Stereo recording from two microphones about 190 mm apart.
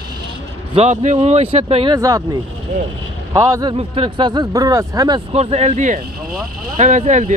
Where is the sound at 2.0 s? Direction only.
15° right (ahead or behind).